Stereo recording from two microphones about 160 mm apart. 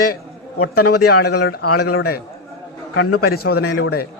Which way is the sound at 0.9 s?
75° left (ahead or behind).